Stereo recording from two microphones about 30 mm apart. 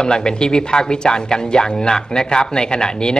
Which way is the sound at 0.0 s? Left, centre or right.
Left.